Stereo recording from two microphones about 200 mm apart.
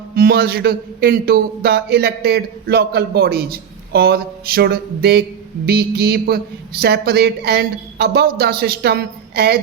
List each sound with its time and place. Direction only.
0.2 s a man's voice: 50° right (ahead or behind)